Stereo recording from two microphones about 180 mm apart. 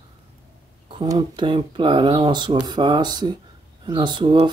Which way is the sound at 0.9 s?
25° right (ahead or behind).